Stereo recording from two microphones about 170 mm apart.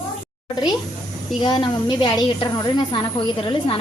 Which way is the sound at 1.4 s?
30° left (ahead or behind).